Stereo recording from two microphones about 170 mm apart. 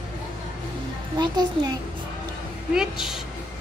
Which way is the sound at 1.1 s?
25° right (ahead or behind).